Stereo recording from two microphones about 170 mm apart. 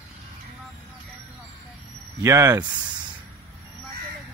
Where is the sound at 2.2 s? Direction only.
20° right (ahead or behind).